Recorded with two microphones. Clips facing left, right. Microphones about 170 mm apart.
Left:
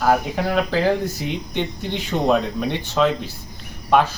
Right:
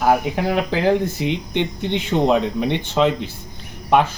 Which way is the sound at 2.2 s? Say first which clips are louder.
Left 1 dB; 15° right (ahead or behind).